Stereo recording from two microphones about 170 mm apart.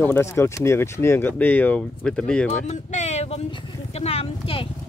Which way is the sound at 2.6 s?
45° left (ahead or behind).